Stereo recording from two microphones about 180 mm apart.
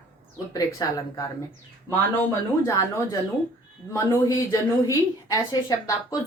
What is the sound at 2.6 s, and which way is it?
Speech, 15° left (ahead or behind).